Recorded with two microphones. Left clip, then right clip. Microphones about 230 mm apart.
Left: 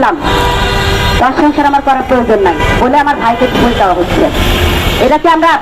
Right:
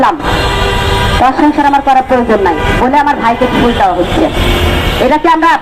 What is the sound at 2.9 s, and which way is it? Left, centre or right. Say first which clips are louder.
Speech: right 1 dB; right.